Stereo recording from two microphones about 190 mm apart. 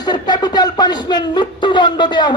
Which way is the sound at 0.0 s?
20° left (ahead or behind).